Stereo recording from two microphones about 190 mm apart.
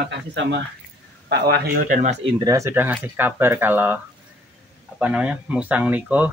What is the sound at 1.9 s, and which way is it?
Speech, 40° right (ahead or behind).